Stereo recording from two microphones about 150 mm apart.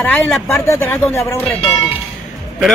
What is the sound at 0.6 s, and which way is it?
Speech, 15° left (ahead or behind).